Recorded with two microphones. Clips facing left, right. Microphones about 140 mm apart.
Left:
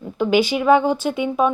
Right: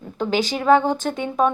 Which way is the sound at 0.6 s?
10° left (ahead or behind).